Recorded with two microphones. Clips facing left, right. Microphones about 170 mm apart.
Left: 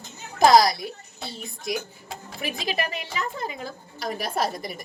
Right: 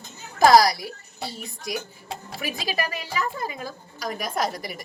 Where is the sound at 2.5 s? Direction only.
20° left (ahead or behind).